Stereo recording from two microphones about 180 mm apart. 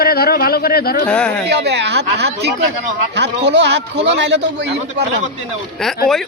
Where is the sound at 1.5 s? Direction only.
70° right (ahead or behind).